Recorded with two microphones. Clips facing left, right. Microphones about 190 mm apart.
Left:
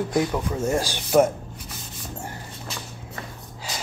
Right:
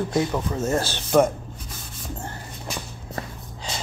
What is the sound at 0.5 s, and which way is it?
Speech, 10° left (ahead or behind).